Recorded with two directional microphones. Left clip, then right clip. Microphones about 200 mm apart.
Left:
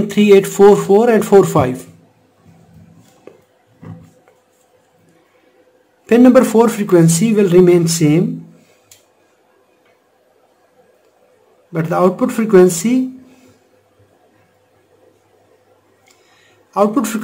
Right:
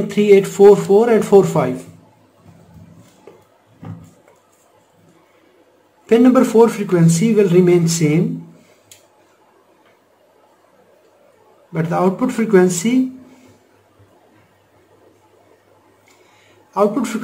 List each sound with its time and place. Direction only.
0.1 s speech: 40° left (ahead or behind)
6.0 s speech: 35° left (ahead or behind)
11.7 s speech: 30° left (ahead or behind)
16.7 s speech: 30° left (ahead or behind)